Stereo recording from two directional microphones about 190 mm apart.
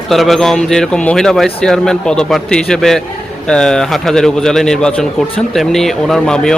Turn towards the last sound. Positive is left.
turn(degrees=5)  # may be behind; listen again after turning